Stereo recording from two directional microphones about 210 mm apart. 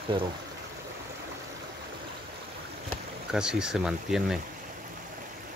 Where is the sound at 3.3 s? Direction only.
5° right (ahead or behind).